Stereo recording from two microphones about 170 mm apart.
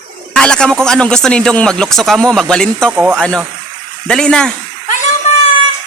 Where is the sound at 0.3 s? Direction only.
5° left (ahead or behind).